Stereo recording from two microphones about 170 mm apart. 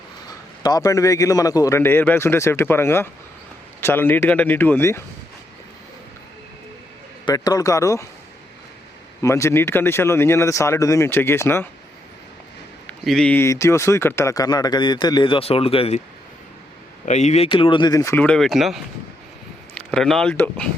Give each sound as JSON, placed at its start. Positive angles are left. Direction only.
{"t": 0.3, "sound": "a man's voice", "side_deg": 25}
{"t": 7.3, "sound": "speech", "side_deg": 20}
{"t": 9.2, "sound": "a man's voice", "side_deg": 15}
{"t": 12.9, "sound": "speech", "side_deg": 5}
{"t": 17.1, "sound": "speech", "side_deg": 40}